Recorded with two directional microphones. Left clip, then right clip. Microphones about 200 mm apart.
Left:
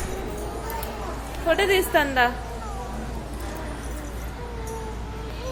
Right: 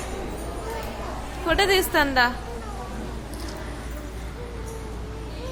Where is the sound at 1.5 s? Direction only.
20° right (ahead or behind).